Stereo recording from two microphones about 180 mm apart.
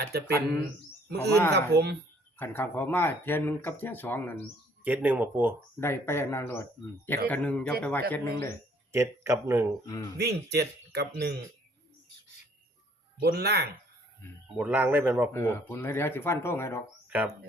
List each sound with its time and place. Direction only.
0.1 s speech: 65° right (ahead or behind)
1.5 s speech: 65° right (ahead or behind)
2.4 s speech: 10° left (ahead or behind)
4.8 s speech: 10° right (ahead or behind)
5.8 s speech: 15° left (ahead or behind)
8.9 s speech: 15° right (ahead or behind)
9.8 s speech: 20° left (ahead or behind)
10.2 s speech: 65° right (ahead or behind)
13.2 s speech: 65° right (ahead or behind)
14.4 s speech: 5° right (ahead or behind)
15.3 s speech: 15° left (ahead or behind)
17.1 s speech: 5° right (ahead or behind)